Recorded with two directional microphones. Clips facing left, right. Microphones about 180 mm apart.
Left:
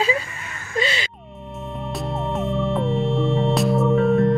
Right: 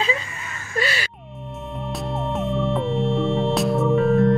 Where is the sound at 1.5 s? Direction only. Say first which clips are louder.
Left 1 dB; centre (ahead or behind).